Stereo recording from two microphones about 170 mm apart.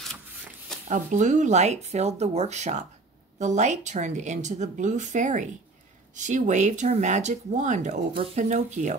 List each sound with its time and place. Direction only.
0.8 s speech: 45° right (ahead or behind)